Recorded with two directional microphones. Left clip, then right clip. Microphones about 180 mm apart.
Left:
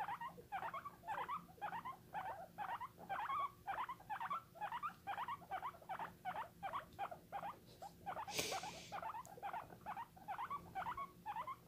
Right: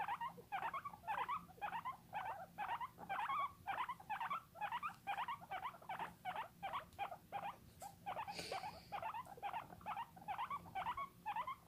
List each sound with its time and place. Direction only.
0.0 s rodents: 20° right (ahead or behind)